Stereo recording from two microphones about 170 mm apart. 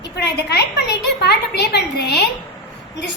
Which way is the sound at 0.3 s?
75° left (ahead or behind).